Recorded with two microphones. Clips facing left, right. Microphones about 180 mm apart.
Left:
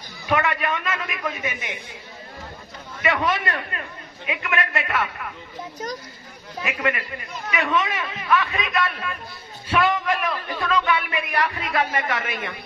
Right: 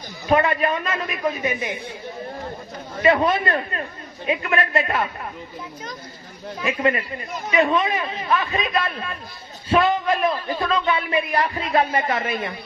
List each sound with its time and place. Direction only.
0.3 s speech: 30° right (ahead or behind)
3.0 s a man's voice: 30° right (ahead or behind)
6.6 s a man's voice: 30° right (ahead or behind)